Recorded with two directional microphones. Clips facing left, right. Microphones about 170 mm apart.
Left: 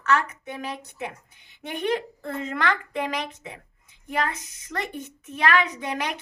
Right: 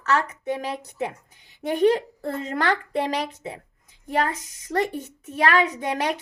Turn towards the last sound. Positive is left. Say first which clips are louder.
# right 4 dB
turn(degrees=-35)  # may be behind; listen again after turning